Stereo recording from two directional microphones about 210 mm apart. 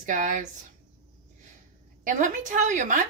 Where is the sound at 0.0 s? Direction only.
35° right (ahead or behind).